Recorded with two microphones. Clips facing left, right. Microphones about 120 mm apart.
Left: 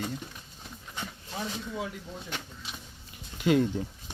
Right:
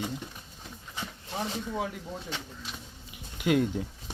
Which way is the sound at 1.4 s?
30° right (ahead or behind).